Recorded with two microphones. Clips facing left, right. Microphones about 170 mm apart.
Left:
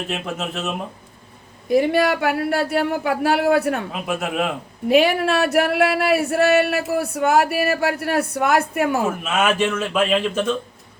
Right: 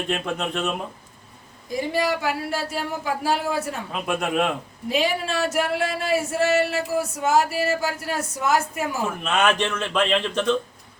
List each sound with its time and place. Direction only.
0.1 s speech: 5° left (ahead or behind)
1.6 s speech: 65° left (ahead or behind)
3.9 s speech: 5° left (ahead or behind)
4.9 s speech: 65° left (ahead or behind)
9.0 s speech: 5° left (ahead or behind)